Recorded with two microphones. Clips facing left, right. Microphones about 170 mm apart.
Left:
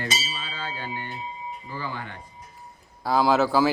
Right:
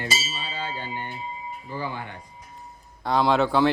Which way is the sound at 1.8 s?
15° right (ahead or behind).